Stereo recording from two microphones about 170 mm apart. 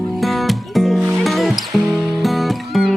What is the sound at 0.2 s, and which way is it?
Music, centre (ahead or behind).